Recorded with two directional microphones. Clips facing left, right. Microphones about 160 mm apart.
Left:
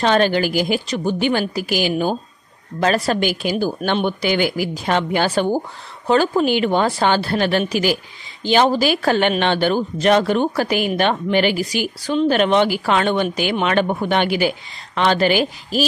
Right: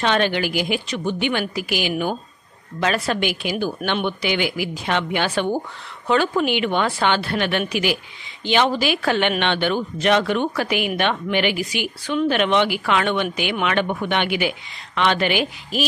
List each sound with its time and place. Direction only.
0.0 s speech: 40° left (ahead or behind)